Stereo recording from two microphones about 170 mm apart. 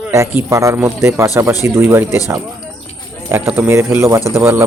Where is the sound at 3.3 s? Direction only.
15° right (ahead or behind).